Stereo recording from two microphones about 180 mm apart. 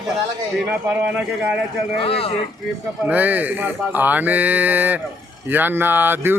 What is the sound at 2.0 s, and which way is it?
Speech, 30° left (ahead or behind).